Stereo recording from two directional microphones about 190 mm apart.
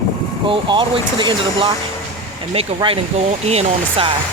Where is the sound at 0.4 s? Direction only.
25° right (ahead or behind).